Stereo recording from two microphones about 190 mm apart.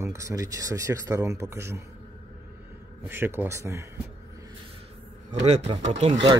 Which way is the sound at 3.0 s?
10° right (ahead or behind).